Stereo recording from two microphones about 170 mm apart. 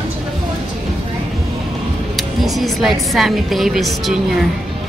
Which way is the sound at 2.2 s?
Centre (ahead or behind).